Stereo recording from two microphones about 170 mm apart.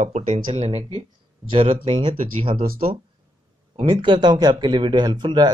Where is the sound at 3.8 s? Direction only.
25° right (ahead or behind).